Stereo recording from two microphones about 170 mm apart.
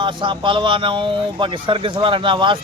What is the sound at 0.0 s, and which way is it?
Speech, 30° right (ahead or behind).